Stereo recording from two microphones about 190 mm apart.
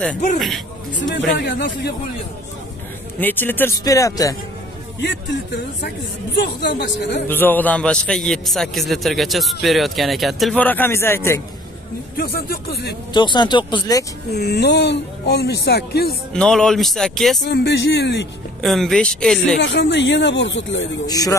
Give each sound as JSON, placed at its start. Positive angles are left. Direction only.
{"t": 1.4, "sound": "speech", "side_deg": 60}
{"t": 3.2, "sound": "speech", "side_deg": 10}
{"t": 5.0, "sound": "speech", "side_deg": 70}
{"t": 7.2, "sound": "a man's voice", "side_deg": 10}
{"t": 12.2, "sound": "speech", "side_deg": 50}
{"t": 13.1, "sound": "speech", "side_deg": 25}
{"t": 14.3, "sound": "speech", "side_deg": 60}
{"t": 16.3, "sound": "a man's voice", "side_deg": 5}
{"t": 17.5, "sound": "speech", "side_deg": 60}
{"t": 18.6, "sound": "a man's voice", "side_deg": 0}
{"t": 19.6, "sound": "speech", "side_deg": 65}
{"t": 21.1, "sound": "speech", "side_deg": 20}